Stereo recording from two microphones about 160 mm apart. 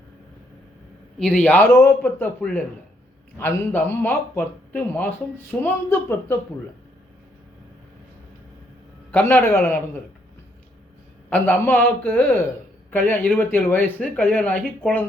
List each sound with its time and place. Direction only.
1.2 s a man's voice: 5° left (ahead or behind)
9.1 s a man's voice: 15° left (ahead or behind)
11.3 s a man's voice: 10° left (ahead or behind)